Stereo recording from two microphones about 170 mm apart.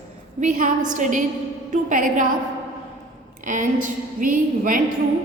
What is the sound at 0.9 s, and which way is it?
A woman's voice, 50° right (ahead or behind).